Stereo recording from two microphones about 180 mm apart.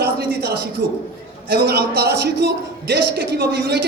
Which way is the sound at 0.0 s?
60° right (ahead or behind).